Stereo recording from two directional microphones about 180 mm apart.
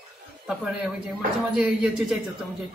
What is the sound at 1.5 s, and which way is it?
Speech, 5° right (ahead or behind).